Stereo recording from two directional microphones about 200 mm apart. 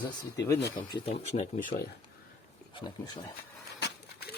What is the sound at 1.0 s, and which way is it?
Speech, 35° left (ahead or behind).